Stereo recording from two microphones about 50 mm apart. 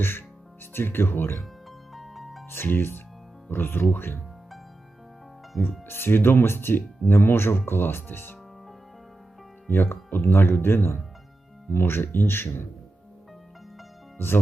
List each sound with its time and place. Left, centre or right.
0.0 s speech: left
1.9 s music: centre
2.5 s speech: left
5.9 s speech: left
9.6 s speech: left